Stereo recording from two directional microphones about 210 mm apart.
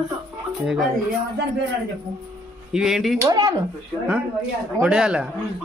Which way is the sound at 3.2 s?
20° right (ahead or behind).